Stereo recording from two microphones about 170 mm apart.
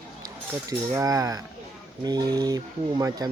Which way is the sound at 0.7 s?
20° right (ahead or behind).